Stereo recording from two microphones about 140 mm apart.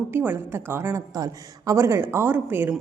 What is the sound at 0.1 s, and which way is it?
A woman's voice, 15° right (ahead or behind).